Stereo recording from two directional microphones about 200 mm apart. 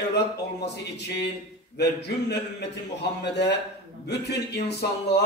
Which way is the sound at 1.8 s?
55° left (ahead or behind).